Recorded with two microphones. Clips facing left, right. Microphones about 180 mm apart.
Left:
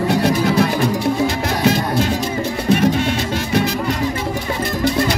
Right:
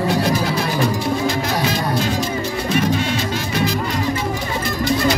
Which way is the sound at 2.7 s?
60° left (ahead or behind).